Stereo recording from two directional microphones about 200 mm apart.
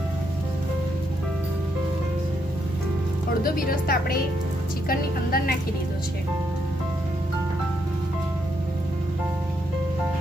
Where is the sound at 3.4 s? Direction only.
45° left (ahead or behind).